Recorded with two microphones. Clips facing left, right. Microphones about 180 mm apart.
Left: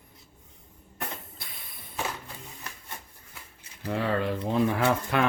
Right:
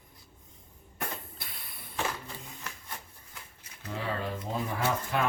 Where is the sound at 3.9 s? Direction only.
65° left (ahead or behind).